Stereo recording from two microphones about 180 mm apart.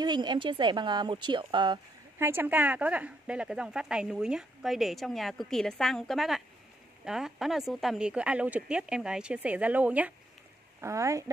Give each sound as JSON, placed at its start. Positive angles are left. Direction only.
{"t": 0.0, "sound": "speech", "side_deg": -25}
{"t": 2.1, "sound": "speech", "side_deg": -10}